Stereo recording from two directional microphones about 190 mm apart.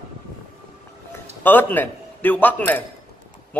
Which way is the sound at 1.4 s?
10° left (ahead or behind).